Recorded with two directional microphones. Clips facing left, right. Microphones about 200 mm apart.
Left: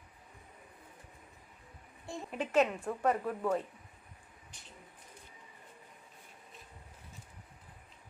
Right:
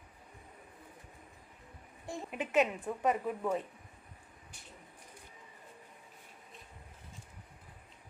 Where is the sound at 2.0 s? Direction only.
5° right (ahead or behind).